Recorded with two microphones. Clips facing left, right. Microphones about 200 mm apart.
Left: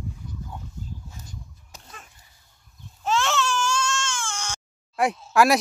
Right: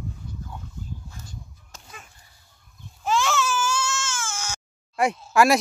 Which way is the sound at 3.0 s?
Centre (ahead or behind).